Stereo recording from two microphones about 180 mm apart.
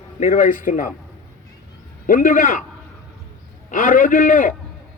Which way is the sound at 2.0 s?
45° left (ahead or behind).